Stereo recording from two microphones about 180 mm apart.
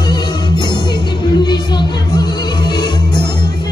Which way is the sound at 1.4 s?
25° left (ahead or behind).